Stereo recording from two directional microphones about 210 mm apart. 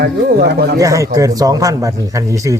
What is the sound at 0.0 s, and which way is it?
Speech, 50° right (ahead or behind).